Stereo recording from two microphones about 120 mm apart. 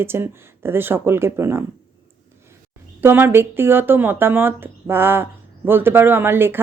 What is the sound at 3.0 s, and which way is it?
Speech, 20° right (ahead or behind).